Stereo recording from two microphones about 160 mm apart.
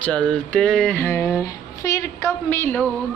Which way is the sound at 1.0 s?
15° left (ahead or behind).